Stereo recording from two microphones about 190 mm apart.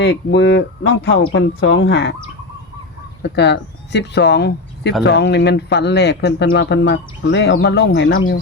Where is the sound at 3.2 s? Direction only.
65° left (ahead or behind).